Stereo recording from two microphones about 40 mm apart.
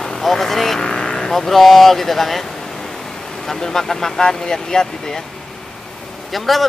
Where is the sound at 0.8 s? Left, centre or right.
Left.